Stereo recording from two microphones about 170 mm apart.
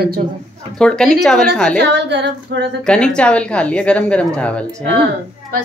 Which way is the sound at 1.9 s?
90° right.